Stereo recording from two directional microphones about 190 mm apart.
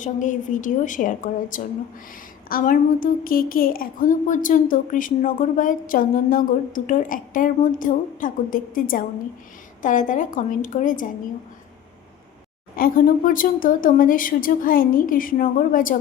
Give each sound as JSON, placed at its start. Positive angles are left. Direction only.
{"t": 0.0, "sound": "a woman's voice", "side_deg": 40}
{"t": 12.7, "sound": "a woman's voice", "side_deg": 45}